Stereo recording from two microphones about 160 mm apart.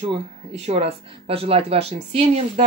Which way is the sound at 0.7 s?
40° right (ahead or behind).